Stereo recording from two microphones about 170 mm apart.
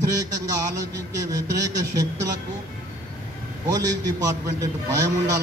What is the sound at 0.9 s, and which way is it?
A man's voice, 20° right (ahead or behind).